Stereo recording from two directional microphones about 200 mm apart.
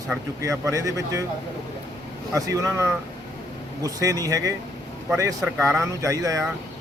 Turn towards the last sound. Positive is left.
turn(degrees=-15)  # may be behind; listen again after turning